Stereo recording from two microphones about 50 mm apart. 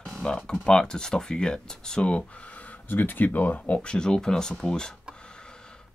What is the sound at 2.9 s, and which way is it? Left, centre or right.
Speech, left.